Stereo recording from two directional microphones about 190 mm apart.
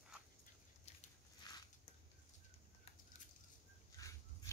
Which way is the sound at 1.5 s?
20° left (ahead or behind).